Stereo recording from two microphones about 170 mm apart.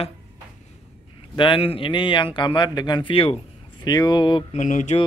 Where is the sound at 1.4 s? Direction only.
30° left (ahead or behind).